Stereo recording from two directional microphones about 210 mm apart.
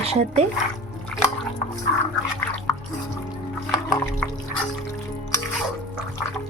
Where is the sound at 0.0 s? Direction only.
30° right (ahead or behind).